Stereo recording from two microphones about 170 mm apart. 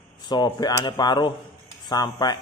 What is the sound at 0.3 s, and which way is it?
A man's voice, 25° left (ahead or behind).